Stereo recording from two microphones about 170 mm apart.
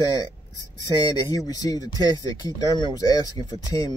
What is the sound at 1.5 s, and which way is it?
Speech, 25° left (ahead or behind).